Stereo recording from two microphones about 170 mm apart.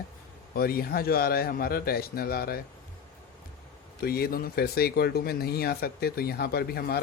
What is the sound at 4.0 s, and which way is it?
Speech, 65° left (ahead or behind).